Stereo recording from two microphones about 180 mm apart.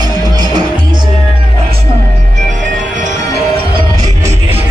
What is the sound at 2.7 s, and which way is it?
Music, 45° right (ahead or behind).